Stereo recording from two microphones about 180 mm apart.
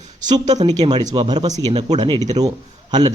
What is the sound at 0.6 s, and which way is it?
Speech, 20° right (ahead or behind).